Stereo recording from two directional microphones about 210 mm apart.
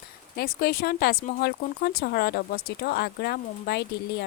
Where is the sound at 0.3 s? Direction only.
45° left (ahead or behind).